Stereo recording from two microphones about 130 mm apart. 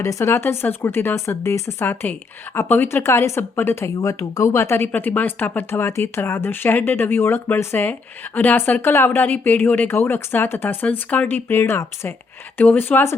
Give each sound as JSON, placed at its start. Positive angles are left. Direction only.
{"t": 0.0, "sound": "speech", "side_deg": 20}